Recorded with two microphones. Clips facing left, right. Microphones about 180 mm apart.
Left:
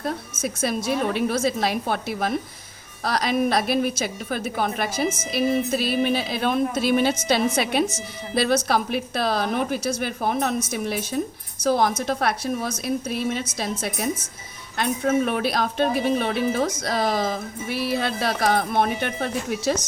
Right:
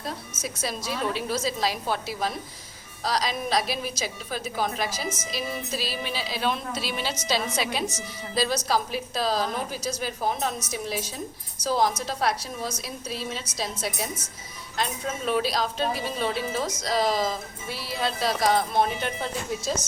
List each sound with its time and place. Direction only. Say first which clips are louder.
0.0 s a woman's voice: left 6 dB; 55° left (ahead or behind)